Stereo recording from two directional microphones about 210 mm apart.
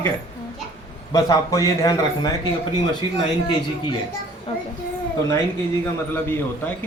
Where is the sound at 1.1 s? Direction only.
15° left (ahead or behind).